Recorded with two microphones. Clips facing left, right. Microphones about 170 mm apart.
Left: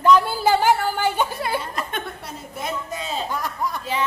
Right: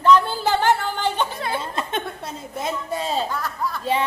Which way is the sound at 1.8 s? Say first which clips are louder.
Right 2 dB; 25° right (ahead or behind).